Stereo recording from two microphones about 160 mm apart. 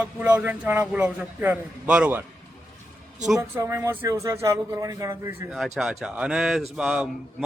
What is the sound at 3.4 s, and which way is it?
A man's voice, 15° right (ahead or behind).